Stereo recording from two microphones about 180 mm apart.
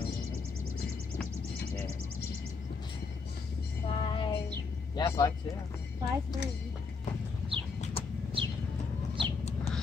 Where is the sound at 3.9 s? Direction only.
30° left (ahead or behind).